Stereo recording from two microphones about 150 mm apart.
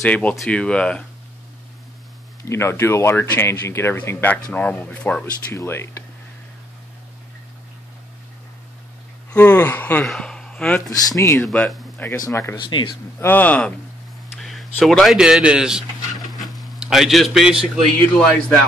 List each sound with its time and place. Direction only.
0.0 s speech: 10° left (ahead or behind)
2.4 s speech: 15° left (ahead or behind)
9.3 s speech: 10° left (ahead or behind)
10.9 s speech: 20° left (ahead or behind)
11.4 s speech: 5° left (ahead or behind)
12.5 s speech: 30° left (ahead or behind)
13.2 s speech: 10° left (ahead or behind); by 17.8 s 5° right (ahead or behind)